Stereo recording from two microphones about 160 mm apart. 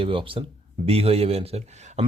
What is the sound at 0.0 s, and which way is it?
Speech, 35° right (ahead or behind).